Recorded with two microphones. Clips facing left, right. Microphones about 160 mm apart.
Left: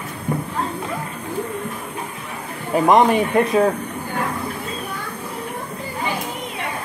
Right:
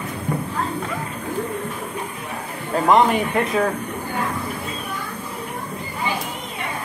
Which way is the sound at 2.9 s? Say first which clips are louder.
Left 1 dB; 20° left (ahead or behind).